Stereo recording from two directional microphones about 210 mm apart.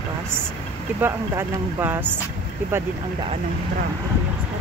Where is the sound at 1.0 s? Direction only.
10° right (ahead or behind).